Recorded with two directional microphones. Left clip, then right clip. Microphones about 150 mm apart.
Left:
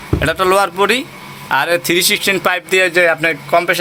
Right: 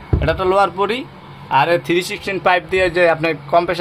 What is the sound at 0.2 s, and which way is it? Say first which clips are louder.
Speech: left 2 dB; centre (ahead or behind).